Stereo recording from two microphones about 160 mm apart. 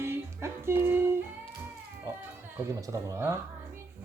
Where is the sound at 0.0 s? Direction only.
15° right (ahead or behind).